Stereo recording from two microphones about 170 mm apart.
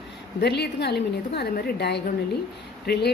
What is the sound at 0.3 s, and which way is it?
A woman's voice, 75° left (ahead or behind).